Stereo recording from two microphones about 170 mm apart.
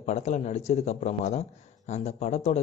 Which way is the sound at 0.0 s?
45° left (ahead or behind).